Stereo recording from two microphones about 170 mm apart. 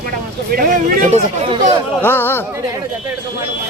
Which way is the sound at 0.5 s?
55° right (ahead or behind).